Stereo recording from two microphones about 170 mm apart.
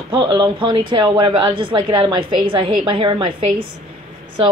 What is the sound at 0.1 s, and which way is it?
Speech, 30° right (ahead or behind).